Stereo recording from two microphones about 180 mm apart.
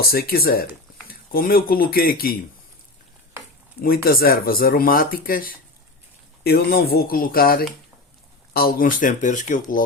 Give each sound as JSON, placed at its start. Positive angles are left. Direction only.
{"t": 0.1, "sound": "speech", "side_deg": 55}
{"t": 3.8, "sound": "speech", "side_deg": 55}